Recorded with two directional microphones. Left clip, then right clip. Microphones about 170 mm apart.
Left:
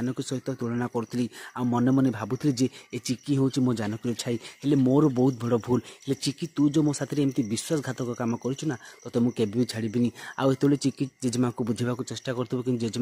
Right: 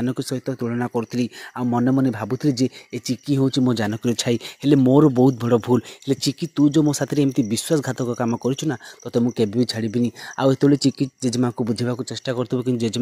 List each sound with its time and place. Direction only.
0.0 s speech: 35° right (ahead or behind)